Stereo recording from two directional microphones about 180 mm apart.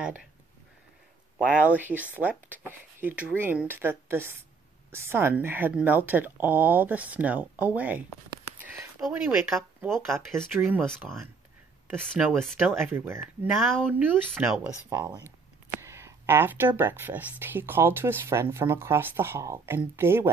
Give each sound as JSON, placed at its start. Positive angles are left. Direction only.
{"t": 0.0, "sound": "speech", "side_deg": -5}
{"t": 1.5, "sound": "speech", "side_deg": -10}
{"t": 9.0, "sound": "speech", "side_deg": 0}
{"t": 10.1, "sound": "speech", "side_deg": -15}
{"t": 12.2, "sound": "speech", "side_deg": 0}
{"t": 12.7, "sound": "speech", "side_deg": -10}
{"t": 14.9, "sound": "speech", "side_deg": -20}